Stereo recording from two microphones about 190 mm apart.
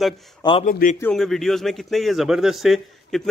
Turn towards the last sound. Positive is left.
turn(degrees=0)  # may be behind; listen again after turning